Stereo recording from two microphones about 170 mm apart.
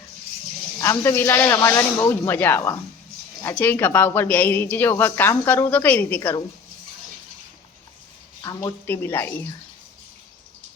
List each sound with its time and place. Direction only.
0.8 s speech: 15° left (ahead or behind)
8.9 s speech: 15° left (ahead or behind)